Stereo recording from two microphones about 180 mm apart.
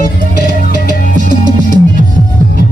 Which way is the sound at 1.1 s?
45° right (ahead or behind).